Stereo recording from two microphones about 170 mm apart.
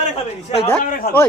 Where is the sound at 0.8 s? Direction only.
55° left (ahead or behind).